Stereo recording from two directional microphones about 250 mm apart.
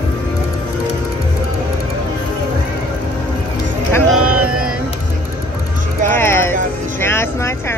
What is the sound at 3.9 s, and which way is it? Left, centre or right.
Music, centre.